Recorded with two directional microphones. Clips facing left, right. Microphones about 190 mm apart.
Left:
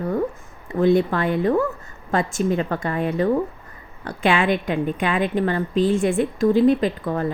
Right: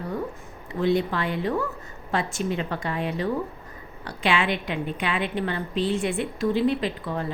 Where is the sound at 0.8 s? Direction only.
50° left (ahead or behind).